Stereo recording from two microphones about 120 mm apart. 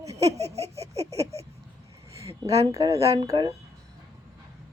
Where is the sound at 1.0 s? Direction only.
25° right (ahead or behind).